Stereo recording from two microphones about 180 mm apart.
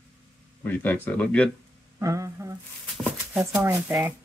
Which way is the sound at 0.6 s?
10° left (ahead or behind).